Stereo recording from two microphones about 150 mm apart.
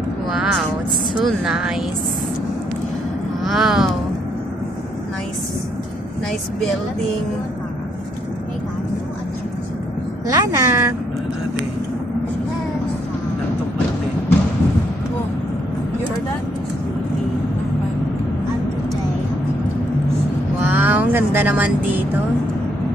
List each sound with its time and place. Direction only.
0.3 s a woman's voice: 5° right (ahead or behind)
3.4 s speech: centre (ahead or behind)
10.2 s a woman's voice: 25° right (ahead or behind)
20.6 s speech: 15° right (ahead or behind)